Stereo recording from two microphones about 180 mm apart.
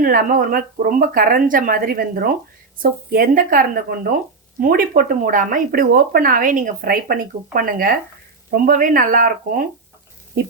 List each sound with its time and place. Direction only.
0.0 s speech: 50° right (ahead or behind)